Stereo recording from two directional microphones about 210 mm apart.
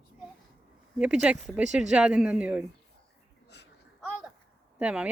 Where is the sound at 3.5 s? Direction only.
55° left (ahead or behind).